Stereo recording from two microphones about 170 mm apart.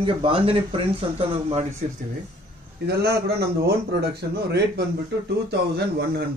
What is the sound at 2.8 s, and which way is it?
A man's voice, 70° right (ahead or behind).